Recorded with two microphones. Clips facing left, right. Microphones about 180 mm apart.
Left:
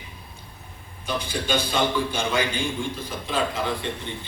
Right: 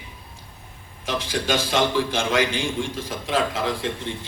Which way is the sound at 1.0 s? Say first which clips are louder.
Right 3 dB; 90° right.